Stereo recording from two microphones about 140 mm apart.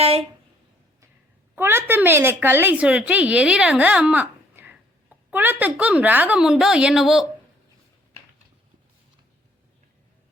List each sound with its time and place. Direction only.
0.0 s speech: 45° right (ahead or behind)
1.5 s a woman's voice: 15° right (ahead or behind)